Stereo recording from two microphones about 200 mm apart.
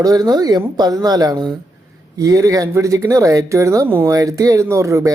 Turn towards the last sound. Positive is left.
turn(degrees=-15)  # may be behind; listen again after turning